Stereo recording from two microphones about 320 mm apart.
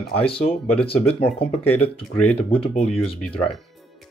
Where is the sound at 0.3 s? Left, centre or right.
Centre.